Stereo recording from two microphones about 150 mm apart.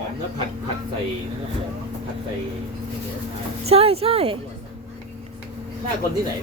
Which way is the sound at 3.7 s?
40° right (ahead or behind).